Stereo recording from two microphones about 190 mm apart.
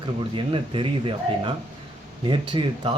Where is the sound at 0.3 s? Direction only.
25° right (ahead or behind).